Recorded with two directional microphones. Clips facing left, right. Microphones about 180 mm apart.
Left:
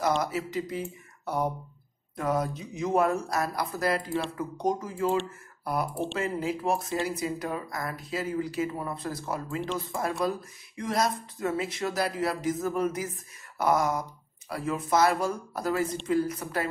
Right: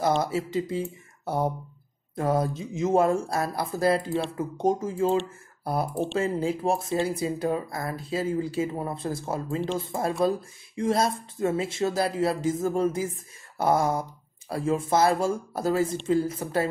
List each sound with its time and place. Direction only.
0.0 s speech: 30° right (ahead or behind)
6.1 s speech: 30° right (ahead or behind)